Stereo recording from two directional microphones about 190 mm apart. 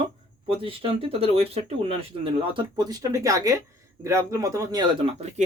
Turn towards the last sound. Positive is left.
turn(degrees=-20)  # may be behind; listen again after turning